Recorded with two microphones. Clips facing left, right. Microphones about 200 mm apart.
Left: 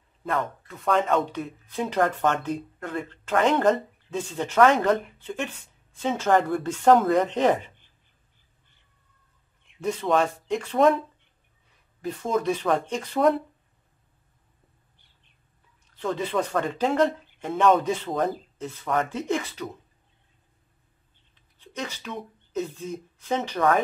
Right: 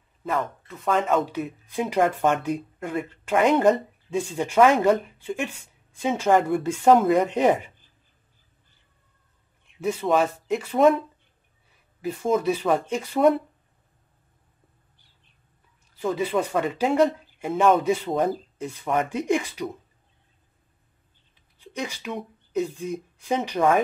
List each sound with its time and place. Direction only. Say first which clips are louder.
0.2 s speech: right 1 dB; centre (ahead or behind)
9.8 s speech: right 1 dB; 5° right (ahead or behind)
15.9 s speech: right 3 dB; 10° right (ahead or behind)
21.5 s speech: right 2 dB; 10° right (ahead or behind)